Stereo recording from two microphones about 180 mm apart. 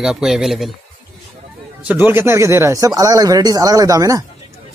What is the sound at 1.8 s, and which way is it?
Speech, 10° right (ahead or behind).